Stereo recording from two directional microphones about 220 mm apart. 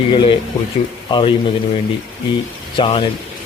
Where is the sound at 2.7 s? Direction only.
25° left (ahead or behind).